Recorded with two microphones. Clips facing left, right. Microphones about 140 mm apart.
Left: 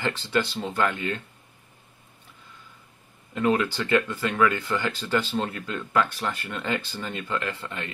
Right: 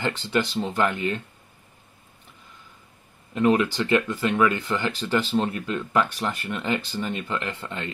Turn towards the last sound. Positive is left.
turn(degrees=-25)  # may be behind; listen again after turning